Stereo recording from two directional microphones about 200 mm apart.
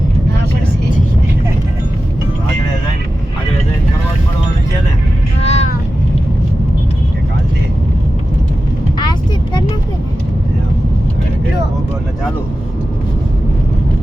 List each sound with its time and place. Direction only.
5.4 s vehicle: 35° left (ahead or behind)